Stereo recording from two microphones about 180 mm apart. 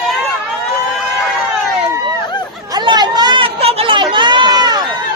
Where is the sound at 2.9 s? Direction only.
25° right (ahead or behind).